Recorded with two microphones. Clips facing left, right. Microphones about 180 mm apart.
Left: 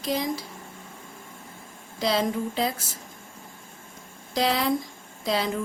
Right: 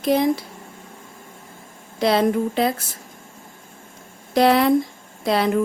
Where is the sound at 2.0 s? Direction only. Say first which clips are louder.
Right 7 dB; 60° right (ahead or behind).